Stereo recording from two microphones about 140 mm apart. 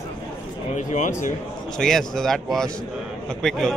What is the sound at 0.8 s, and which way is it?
Speech, 60° left (ahead or behind).